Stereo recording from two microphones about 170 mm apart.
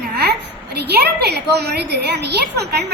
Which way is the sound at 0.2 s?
75° right (ahead or behind).